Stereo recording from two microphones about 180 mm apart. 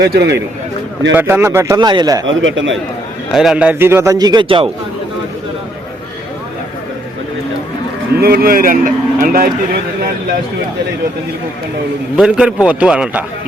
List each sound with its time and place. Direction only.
0.0 s a man's voice: 65° right (ahead or behind)
1.1 s a man's voice: 10° right (ahead or behind)
2.2 s speech: 90° right
3.3 s a man's voice: 5° right (ahead or behind); by 4.7 s 30° right (ahead or behind)
8.2 s a man's voice: 55° right (ahead or behind)
12.1 s a man's voice: 5° right (ahead or behind)